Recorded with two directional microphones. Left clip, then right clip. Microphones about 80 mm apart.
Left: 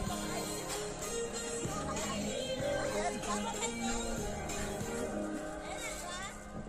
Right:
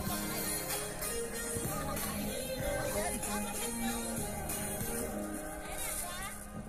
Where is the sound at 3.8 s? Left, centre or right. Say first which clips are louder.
Left 1 dB; right.